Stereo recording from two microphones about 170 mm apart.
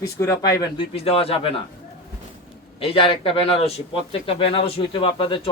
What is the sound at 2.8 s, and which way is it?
Speech, 35° left (ahead or behind).